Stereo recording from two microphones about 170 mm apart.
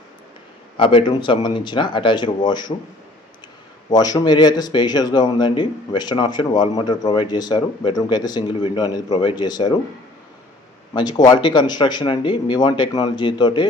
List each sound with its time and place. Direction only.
0.8 s speech: 30° left (ahead or behind)
3.8 s speech: 25° left (ahead or behind)
10.9 s speech: 25° left (ahead or behind)